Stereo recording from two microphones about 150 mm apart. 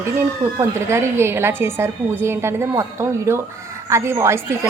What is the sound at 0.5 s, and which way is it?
A woman's voice, 20° right (ahead or behind).